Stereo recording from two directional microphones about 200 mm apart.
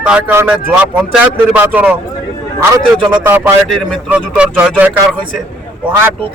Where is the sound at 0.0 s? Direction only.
10° right (ahead or behind).